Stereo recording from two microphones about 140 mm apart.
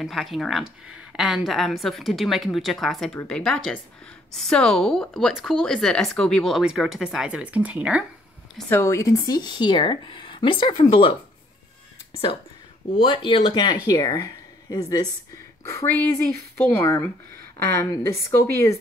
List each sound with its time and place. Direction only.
0.0 s speech: centre (ahead or behind)
8.6 s speech: 15° left (ahead or behind); by 11.1 s 40° left (ahead or behind)
12.9 s a woman's voice: 35° left (ahead or behind); by 18.8 s 20° left (ahead or behind)